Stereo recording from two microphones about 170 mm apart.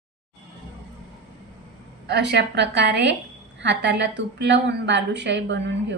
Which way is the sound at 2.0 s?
80° right.